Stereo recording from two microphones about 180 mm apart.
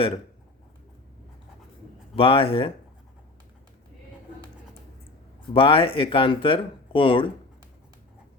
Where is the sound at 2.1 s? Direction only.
30° left (ahead or behind).